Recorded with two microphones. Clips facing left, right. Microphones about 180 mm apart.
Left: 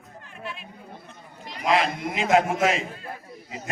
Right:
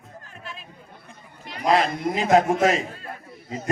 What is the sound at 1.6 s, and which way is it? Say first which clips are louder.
A man's voice: right 3 dB; 40° right (ahead or behind).